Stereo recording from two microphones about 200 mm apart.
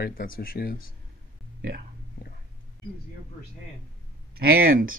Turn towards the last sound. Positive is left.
turn(degrees=-45)  # may be behind; listen again after turning